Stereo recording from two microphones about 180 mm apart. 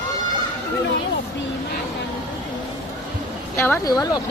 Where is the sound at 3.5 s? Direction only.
15° left (ahead or behind).